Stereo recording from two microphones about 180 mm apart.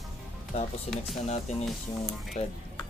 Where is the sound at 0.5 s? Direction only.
35° left (ahead or behind).